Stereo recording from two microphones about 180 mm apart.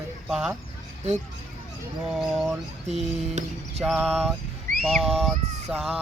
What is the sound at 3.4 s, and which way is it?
Speech, 40° right (ahead or behind).